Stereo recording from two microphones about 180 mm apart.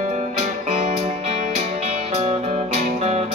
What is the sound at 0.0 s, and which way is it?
Music, 40° right (ahead or behind).